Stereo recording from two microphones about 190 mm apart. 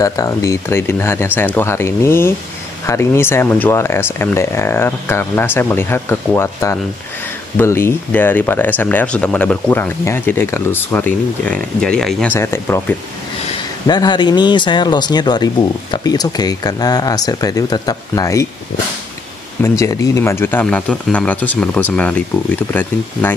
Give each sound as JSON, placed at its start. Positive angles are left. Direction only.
{"t": 0.0, "sound": "speech", "side_deg": 20}
{"t": 19.6, "sound": "speech", "side_deg": 15}